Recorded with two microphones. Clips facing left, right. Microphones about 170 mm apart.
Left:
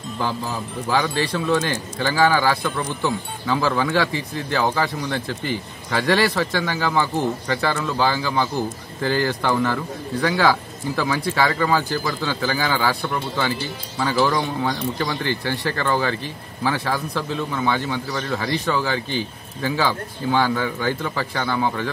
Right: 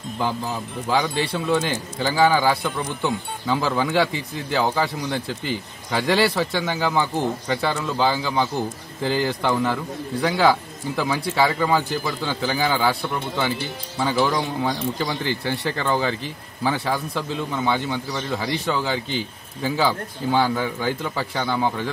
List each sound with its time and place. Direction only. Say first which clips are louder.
0.8 s speech: even; 15° right (ahead or behind)
13.9 s speech: left 1 dB; 15° right (ahead or behind)